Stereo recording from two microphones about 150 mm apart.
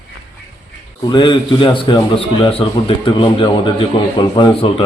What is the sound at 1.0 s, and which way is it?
A man's voice, 30° left (ahead or behind).